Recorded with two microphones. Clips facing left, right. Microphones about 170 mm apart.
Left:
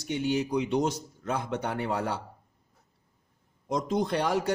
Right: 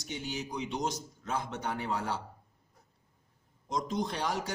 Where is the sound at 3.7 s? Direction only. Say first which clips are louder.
Left 6 dB; 55° left (ahead or behind).